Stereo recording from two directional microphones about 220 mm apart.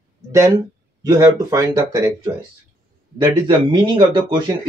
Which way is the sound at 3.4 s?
20° right (ahead or behind).